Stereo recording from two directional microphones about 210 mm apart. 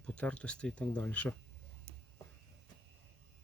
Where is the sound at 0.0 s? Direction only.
5° left (ahead or behind).